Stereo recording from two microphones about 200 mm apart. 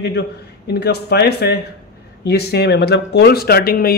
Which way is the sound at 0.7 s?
55° left (ahead or behind).